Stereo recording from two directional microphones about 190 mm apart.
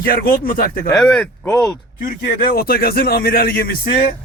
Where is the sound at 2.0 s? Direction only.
45° left (ahead or behind).